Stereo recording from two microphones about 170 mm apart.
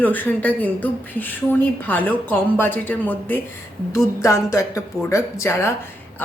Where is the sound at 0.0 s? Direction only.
10° left (ahead or behind).